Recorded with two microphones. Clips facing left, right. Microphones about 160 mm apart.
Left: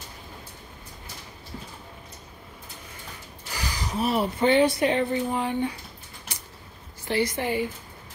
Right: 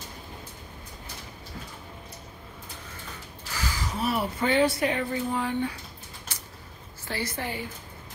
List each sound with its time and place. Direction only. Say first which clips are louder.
3.5 s speech: left 2 dB; 15° left (ahead or behind)
6.3 s creak: left 3 dB; 15° left (ahead or behind)
7.1 s a woman's voice: left 7 dB; 15° left (ahead or behind)